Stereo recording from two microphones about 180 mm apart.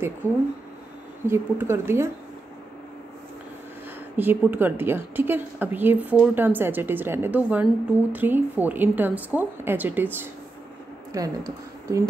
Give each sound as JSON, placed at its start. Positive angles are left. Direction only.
{"t": 0.2, "sound": "speech", "side_deg": 10}
{"t": 1.2, "sound": "a woman's voice", "side_deg": -15}
{"t": 4.2, "sound": "a woman's voice", "side_deg": -10}